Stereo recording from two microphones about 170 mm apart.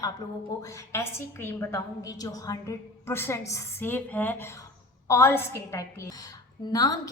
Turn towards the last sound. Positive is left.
turn(degrees=20)  # may be behind; listen again after turning